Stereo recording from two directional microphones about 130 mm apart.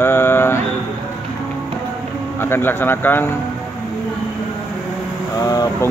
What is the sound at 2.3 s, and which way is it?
Speech, 20° left (ahead or behind).